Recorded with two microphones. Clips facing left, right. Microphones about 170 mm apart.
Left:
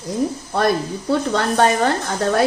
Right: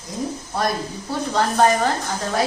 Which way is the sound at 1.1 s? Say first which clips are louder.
Left 3 dB; 65° left (ahead or behind).